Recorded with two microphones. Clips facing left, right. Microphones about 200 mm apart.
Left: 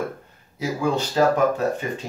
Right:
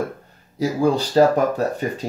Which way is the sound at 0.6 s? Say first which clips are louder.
Right 4 dB; 35° right (ahead or behind).